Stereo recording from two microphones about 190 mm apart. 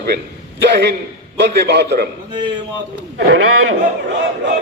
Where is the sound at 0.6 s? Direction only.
65° right (ahead or behind).